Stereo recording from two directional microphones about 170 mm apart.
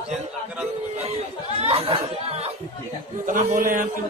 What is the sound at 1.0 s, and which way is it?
Chatter, 35° right (ahead or behind).